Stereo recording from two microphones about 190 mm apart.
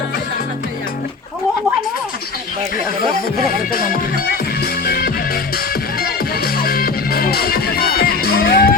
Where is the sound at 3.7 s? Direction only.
50° left (ahead or behind).